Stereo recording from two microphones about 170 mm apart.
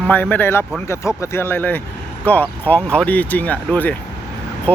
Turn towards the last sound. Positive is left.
turn(degrees=10)  # may be behind; listen again after turning